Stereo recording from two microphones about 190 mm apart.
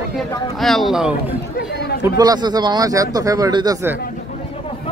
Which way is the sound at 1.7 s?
60° left (ahead or behind).